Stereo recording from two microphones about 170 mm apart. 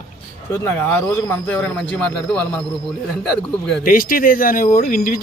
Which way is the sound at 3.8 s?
55° left (ahead or behind).